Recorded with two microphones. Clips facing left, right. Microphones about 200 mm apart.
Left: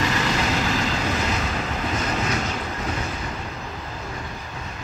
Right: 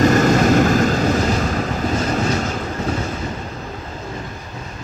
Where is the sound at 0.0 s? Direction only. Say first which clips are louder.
Right 10 dB; 45° right (ahead or behind).